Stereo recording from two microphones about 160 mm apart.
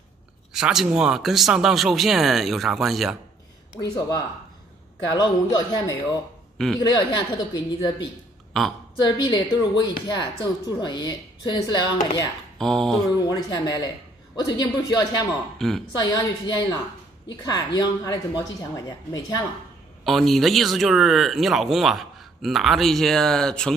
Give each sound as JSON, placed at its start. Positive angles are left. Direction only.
{"t": 0.5, "sound": "speech", "side_deg": -5}
{"t": 3.8, "sound": "a woman's voice", "side_deg": 20}
{"t": 9.0, "sound": "a woman's voice", "side_deg": 30}
{"t": 12.5, "sound": "a sound", "side_deg": 5}
{"t": 13.1, "sound": "a woman's voice", "side_deg": 25}
{"t": 15.5, "sound": "speech", "side_deg": 0}
{"t": 16.0, "sound": "a woman's voice", "side_deg": 20}
{"t": 20.1, "sound": "speech", "side_deg": 0}